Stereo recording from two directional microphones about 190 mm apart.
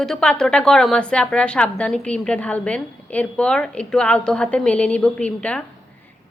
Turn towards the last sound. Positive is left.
turn(degrees=5)  # may be behind; listen again after turning